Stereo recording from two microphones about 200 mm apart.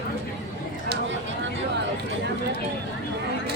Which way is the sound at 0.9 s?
65° right (ahead or behind).